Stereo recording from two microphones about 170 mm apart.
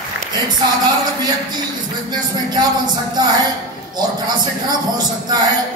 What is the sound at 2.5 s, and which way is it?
Speech, 25° right (ahead or behind).